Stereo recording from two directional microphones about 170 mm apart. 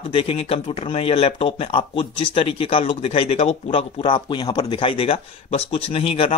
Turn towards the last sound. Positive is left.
turn(degrees=35)  # may be behind; listen again after turning